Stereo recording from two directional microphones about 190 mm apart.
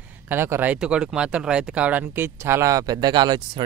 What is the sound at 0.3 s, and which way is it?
Speech, 10° right (ahead or behind).